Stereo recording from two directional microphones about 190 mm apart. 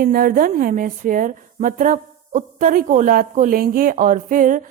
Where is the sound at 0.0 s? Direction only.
50° right (ahead or behind).